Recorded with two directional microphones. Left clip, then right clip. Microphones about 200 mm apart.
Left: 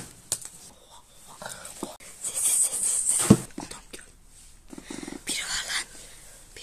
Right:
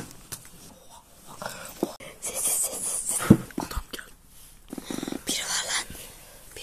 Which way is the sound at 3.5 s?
15° right (ahead or behind).